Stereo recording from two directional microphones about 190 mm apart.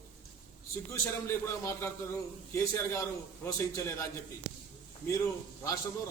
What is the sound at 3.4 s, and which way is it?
Speech, 15° left (ahead or behind).